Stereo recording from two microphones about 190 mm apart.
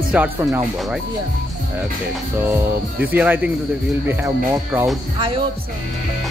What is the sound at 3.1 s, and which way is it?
Speech, 10° right (ahead or behind).